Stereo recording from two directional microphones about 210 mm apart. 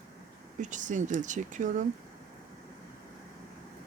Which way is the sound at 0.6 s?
35° right (ahead or behind).